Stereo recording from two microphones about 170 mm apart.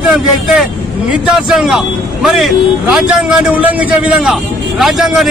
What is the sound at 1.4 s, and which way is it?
Speech, 5° right (ahead or behind).